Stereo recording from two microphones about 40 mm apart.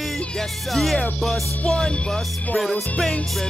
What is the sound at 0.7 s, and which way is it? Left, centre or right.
Music, centre.